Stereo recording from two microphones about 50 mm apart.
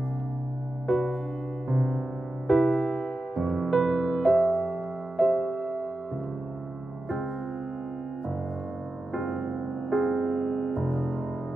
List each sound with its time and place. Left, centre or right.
0.8 s music: centre
3.3 s music: centre
5.3 s music: centre
9.1 s music: centre
9.8 s music: centre